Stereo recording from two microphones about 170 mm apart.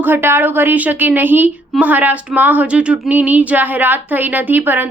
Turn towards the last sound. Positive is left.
turn(degrees=-10)  # may be behind; listen again after turning